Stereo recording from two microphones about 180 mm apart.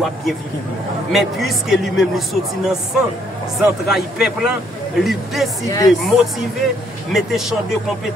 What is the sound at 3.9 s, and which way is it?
Speech, centre (ahead or behind).